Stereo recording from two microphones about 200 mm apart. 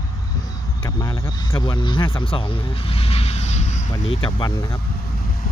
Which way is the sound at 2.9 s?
30° left (ahead or behind).